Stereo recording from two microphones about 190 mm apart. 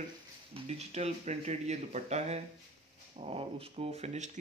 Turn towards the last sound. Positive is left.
turn(degrees=-40)  # may be behind; listen again after turning